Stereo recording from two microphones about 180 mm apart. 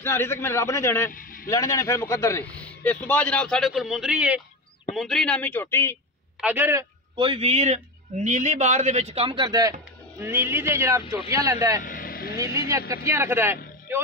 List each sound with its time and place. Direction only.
0.0 s a man's voice: 15° left (ahead or behind)
1.1 s vehicle: 50° left (ahead or behind)
1.5 s a man's voice: 20° left (ahead or behind)
6.4 s speech: 10° right (ahead or behind)
7.2 s a man's voice: 30° right (ahead or behind)
11.8 s vehicle: 50° left (ahead or behind)
12.4 s speech: 15° right (ahead or behind)